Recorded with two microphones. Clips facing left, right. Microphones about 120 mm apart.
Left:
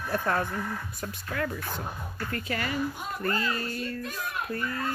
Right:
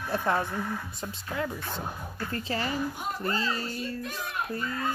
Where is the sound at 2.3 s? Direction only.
25° right (ahead or behind).